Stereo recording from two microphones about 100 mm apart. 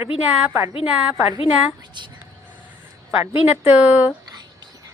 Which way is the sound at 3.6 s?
15° right (ahead or behind).